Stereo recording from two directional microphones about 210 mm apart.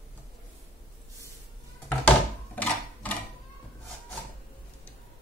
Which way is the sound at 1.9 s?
5° left (ahead or behind).